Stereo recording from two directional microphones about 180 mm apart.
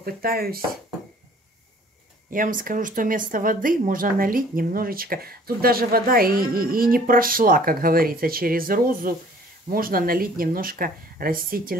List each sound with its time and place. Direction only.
0.0 s speech: 55° right (ahead or behind)
2.3 s speech: 50° right (ahead or behind)